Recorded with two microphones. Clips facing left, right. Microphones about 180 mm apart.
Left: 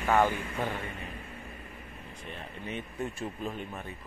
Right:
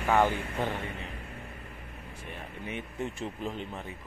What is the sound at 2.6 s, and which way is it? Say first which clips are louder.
Speech: even; 15° right (ahead or behind).